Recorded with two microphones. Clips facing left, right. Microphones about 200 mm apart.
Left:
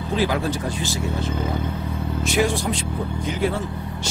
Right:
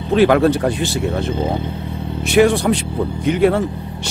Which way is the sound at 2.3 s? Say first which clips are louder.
Right 10 dB; 65° right (ahead or behind).